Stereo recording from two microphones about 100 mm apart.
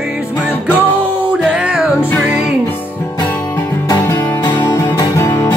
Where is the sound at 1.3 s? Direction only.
10° right (ahead or behind).